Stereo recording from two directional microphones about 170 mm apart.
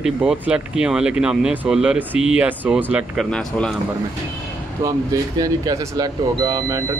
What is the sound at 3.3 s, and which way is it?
Speech, 5° left (ahead or behind).